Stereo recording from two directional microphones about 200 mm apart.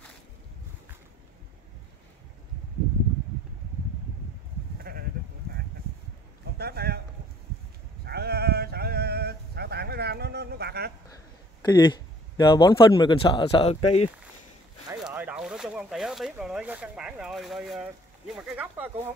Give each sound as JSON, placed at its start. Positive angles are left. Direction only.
{"t": 4.9, "sound": "sheep", "side_deg": -50}
{"t": 6.4, "sound": "a sound", "side_deg": -50}
{"t": 8.0, "sound": "sheep", "side_deg": -50}
{"t": 11.6, "sound": "speech", "side_deg": 20}
{"t": 14.9, "sound": "speech", "side_deg": -10}